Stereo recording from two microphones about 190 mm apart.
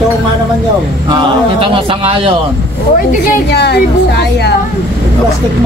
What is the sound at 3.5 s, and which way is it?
A woman's voice, 60° left (ahead or behind).